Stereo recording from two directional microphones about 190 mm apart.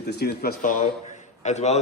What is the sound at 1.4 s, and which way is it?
Speech, 35° left (ahead or behind).